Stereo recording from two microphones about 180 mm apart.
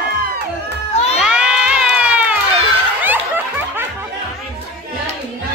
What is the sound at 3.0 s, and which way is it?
Snicker, 10° right (ahead or behind).